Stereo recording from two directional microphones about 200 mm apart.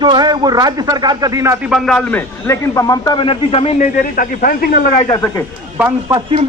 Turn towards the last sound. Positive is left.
turn(degrees=-10)  # may be behind; listen again after turning